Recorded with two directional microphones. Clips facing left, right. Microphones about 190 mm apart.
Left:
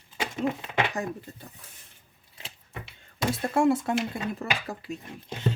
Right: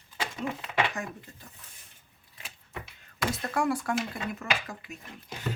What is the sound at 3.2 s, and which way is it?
Speech, 25° left (ahead or behind).